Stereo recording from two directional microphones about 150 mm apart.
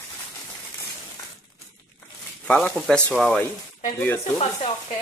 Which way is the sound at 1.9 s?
5° left (ahead or behind).